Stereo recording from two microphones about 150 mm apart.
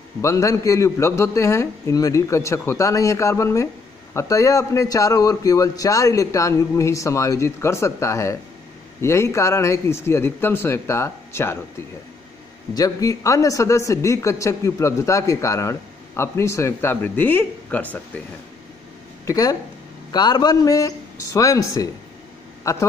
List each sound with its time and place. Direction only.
0.2 s a man's voice: 20° left (ahead or behind)
12.7 s a man's voice: 25° left (ahead or behind)
19.2 s a man's voice: 25° left (ahead or behind)